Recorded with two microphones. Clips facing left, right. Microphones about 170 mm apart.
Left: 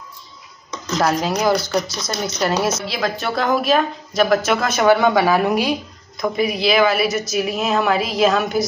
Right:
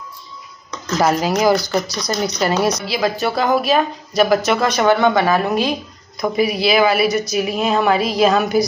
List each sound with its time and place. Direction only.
0.9 s a woman's voice: 5° right (ahead or behind); by 5.8 s 10° left (ahead or behind)
6.2 s a woman's voice: centre (ahead or behind)